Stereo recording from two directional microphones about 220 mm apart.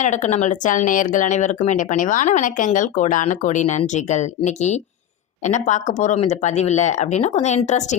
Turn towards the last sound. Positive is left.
turn(degrees=30)  # may be behind; listen again after turning